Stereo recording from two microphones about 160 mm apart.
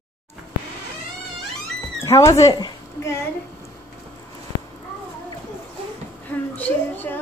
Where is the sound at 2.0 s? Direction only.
20° left (ahead or behind).